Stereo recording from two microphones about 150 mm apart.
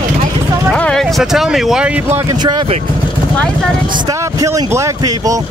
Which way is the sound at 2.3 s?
30° right (ahead or behind).